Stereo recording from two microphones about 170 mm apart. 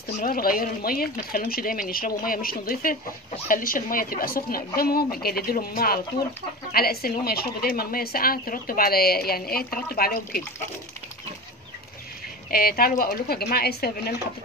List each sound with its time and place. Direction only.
0.2 s speech: 60° left (ahead or behind)
12.4 s speech: 60° left (ahead or behind)